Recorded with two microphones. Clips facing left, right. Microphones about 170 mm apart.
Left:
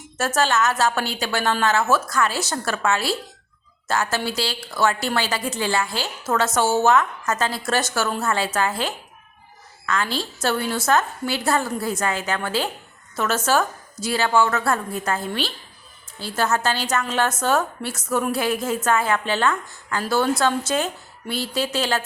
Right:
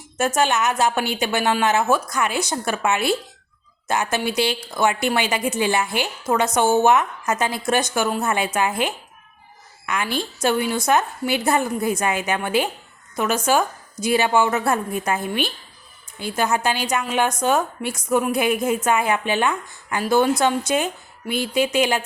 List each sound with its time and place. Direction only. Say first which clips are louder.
0.2 s a woman's voice: right 1 dB; 15° right (ahead or behind)
9.8 s a woman's voice: even; 15° right (ahead or behind)